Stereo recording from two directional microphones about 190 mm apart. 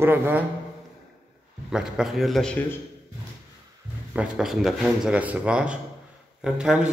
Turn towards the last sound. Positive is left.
turn(degrees=-5)  # may be behind; listen again after turning